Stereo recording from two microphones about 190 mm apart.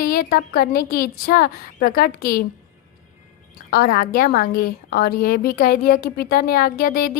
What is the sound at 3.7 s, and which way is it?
A woman's voice, 50° left (ahead or behind).